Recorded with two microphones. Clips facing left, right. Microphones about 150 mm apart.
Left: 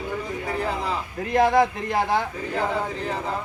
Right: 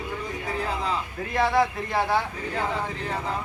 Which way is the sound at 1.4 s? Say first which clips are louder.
Left 4 dB; 45° left (ahead or behind).